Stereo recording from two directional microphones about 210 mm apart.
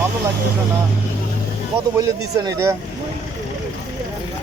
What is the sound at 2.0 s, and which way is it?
Speech, 15° right (ahead or behind).